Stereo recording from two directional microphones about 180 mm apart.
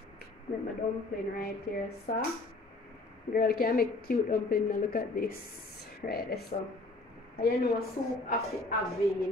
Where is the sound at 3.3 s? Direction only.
55° left (ahead or behind).